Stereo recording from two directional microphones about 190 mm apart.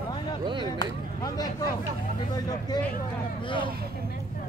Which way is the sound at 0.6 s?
20° left (ahead or behind).